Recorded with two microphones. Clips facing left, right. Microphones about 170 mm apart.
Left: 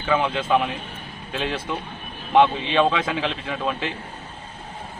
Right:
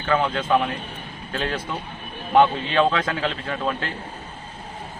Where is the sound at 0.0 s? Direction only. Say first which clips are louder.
Even; 5° left (ahead or behind).